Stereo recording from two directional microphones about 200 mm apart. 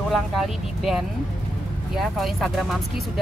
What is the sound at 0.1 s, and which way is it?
Speech, centre (ahead or behind).